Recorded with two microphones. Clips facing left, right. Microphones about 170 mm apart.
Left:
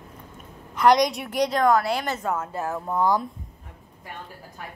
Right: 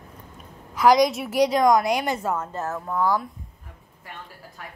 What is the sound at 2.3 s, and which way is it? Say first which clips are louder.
Speech: even; 10° left (ahead or behind).